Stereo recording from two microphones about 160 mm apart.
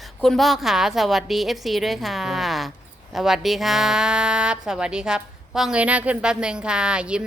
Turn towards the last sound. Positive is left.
turn(degrees=-5)  # may be behind; listen again after turning